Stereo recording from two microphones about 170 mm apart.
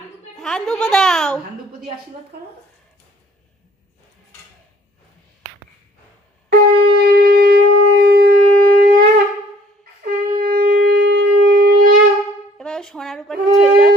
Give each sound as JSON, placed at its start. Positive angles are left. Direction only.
{"t": 0.3, "sound": "speech", "side_deg": 0}
{"t": 6.5, "sound": "shofar", "side_deg": -70}
{"t": 12.5, "sound": "a sound", "side_deg": 5}
{"t": 13.6, "sound": "music", "side_deg": 0}